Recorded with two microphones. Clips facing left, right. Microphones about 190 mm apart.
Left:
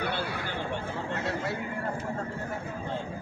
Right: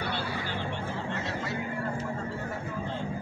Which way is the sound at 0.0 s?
50° left (ahead or behind).